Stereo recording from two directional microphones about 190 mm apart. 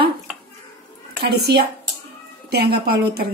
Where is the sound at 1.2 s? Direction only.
60° right (ahead or behind).